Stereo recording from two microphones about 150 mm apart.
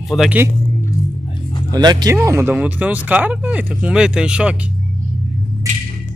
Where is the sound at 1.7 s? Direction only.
30° right (ahead or behind).